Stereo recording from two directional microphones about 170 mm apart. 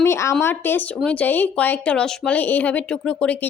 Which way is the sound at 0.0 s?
15° left (ahead or behind).